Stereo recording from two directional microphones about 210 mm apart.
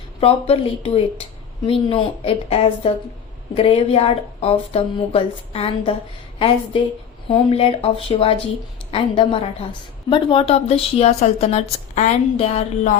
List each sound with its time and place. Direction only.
0.2 s a woman's voice: 25° left (ahead or behind)
7.3 s a woman's voice: 25° left (ahead or behind)